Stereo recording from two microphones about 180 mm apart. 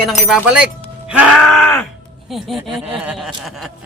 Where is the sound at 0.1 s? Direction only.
5° right (ahead or behind).